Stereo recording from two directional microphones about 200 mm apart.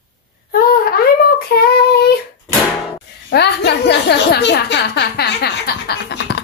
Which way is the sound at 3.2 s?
55° left (ahead or behind).